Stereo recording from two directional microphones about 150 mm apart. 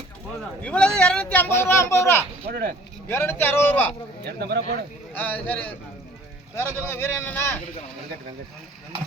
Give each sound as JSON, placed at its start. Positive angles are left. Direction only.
{"t": 0.6, "sound": "speech", "side_deg": 5}
{"t": 2.5, "sound": "speech", "side_deg": -90}
{"t": 3.1, "sound": "speech", "side_deg": 15}
{"t": 4.4, "sound": "speech", "side_deg": -90}
{"t": 5.1, "sound": "speech", "side_deg": 10}